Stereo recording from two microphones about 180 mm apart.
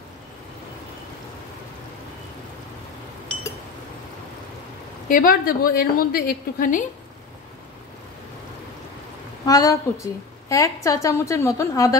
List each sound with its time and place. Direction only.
5.0 s a woman's voice: 50° left (ahead or behind)
9.5 s a woman's voice: 20° left (ahead or behind)